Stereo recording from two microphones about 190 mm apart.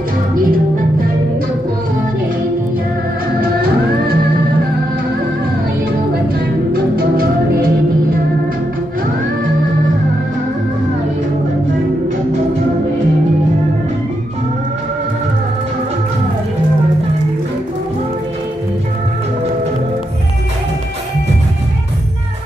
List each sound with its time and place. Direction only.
0.4 s music: 50° right (ahead or behind)
6.3 s music: 50° right (ahead or behind)